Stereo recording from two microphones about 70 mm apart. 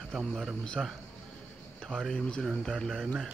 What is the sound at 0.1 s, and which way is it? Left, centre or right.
Speech, centre.